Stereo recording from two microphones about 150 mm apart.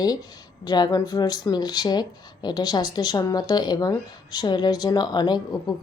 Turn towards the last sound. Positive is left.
turn(degrees=25)  # may be behind; listen again after turning